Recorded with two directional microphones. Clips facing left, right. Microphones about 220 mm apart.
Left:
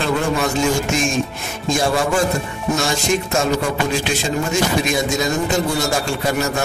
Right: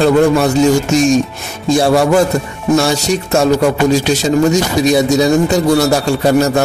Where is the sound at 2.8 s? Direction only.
40° right (ahead or behind).